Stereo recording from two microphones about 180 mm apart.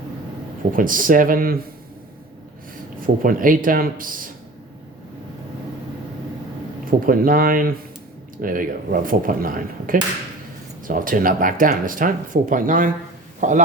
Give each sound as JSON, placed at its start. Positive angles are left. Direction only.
{"t": 0.7, "sound": "speech", "side_deg": -50}
{"t": 3.2, "sound": "speech", "side_deg": -50}
{"t": 7.0, "sound": "speech", "side_deg": -50}